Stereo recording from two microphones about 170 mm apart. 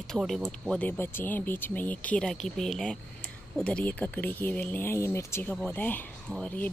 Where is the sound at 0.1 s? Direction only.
Centre (ahead or behind).